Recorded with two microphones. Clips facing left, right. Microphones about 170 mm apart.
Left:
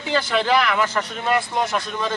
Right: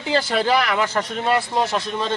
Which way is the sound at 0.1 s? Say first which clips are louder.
Right 1 dB; 35° right (ahead or behind).